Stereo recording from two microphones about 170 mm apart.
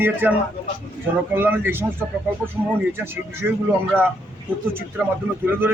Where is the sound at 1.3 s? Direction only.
10° right (ahead or behind).